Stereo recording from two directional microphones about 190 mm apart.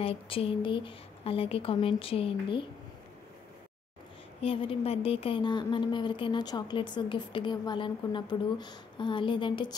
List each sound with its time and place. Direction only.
0.0 s a woman's voice: 30° left (ahead or behind)
4.4 s a woman's voice: 30° left (ahead or behind)